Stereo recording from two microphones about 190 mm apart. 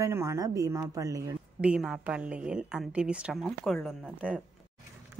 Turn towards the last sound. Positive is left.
turn(degrees=-5)  # may be behind; listen again after turning